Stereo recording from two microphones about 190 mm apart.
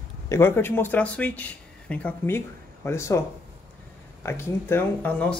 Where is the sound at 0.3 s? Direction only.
10° left (ahead or behind).